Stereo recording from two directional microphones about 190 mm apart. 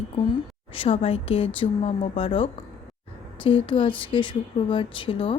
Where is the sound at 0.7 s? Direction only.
30° left (ahead or behind).